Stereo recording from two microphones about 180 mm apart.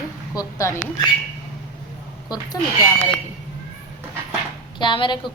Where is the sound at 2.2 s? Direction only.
20° left (ahead or behind).